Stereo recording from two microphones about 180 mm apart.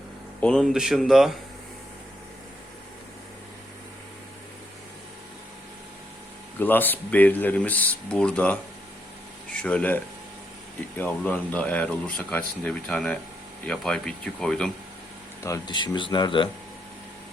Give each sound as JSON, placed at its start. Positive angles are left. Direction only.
{"t": 0.3, "sound": "speech", "side_deg": 5}
{"t": 6.6, "sound": "speech", "side_deg": 10}
{"t": 15.4, "sound": "speech", "side_deg": 20}